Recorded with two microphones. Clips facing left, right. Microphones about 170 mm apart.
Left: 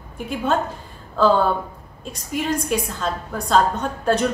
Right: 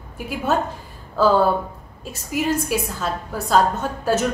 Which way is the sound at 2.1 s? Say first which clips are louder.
Right 2 dB; 5° right (ahead or behind).